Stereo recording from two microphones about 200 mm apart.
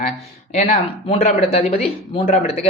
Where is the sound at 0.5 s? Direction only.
30° left (ahead or behind).